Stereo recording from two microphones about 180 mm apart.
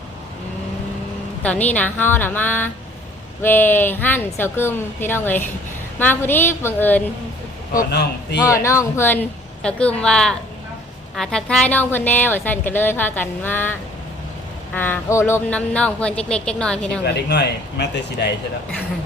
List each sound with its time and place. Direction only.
1.4 s a woman's voice: 10° left (ahead or behind)
7.9 s speech: 70° left (ahead or behind)
8.5 s a woman's voice: 15° left (ahead or behind)
17.2 s speech: 70° left (ahead or behind)